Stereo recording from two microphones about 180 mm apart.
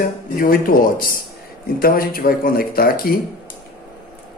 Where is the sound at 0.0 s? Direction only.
50° left (ahead or behind).